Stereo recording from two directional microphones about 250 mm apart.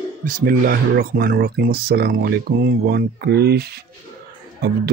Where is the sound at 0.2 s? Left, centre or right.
Right.